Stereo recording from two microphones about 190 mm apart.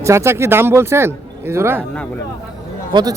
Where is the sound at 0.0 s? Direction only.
15° right (ahead or behind).